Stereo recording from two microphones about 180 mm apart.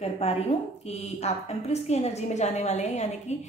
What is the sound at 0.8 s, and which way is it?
A woman's voice, 35° left (ahead or behind).